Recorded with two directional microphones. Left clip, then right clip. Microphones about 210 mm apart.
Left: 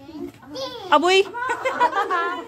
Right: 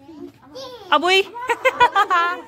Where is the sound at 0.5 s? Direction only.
Centre (ahead or behind).